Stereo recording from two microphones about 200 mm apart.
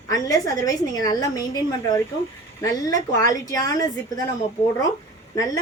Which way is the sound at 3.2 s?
15° left (ahead or behind).